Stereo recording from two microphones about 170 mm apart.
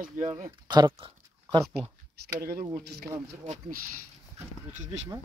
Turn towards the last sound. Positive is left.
turn(degrees=-45)  # may be behind; listen again after turning